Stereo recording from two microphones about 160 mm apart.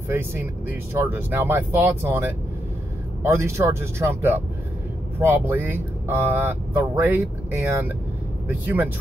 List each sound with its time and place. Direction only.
0.1 s speech: 15° right (ahead or behind)